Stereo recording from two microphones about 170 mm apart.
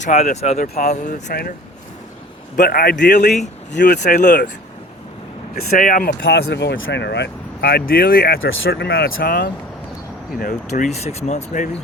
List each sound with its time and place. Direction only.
0.0 s speech: 50° left (ahead or behind)
1.3 s speech: 65° left (ahead or behind)
2.6 s speech: 65° left (ahead or behind); by 3.2 s 85° left
3.8 s speech: 45° left (ahead or behind)
5.5 s speech: 60° left (ahead or behind)
6.2 s speech: 90° left; by 9.5 s 65° left (ahead or behind)
10.7 s speech: 45° left (ahead or behind)